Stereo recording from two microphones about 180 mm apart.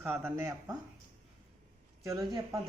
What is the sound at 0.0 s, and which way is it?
Speech, 10° right (ahead or behind).